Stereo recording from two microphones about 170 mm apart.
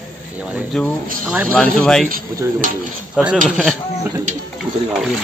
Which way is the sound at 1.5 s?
5° left (ahead or behind).